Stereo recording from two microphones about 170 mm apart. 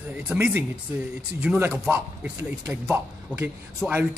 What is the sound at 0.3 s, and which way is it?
Speech, 10° right (ahead or behind).